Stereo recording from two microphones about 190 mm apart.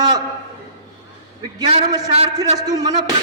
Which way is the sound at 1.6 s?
25° right (ahead or behind).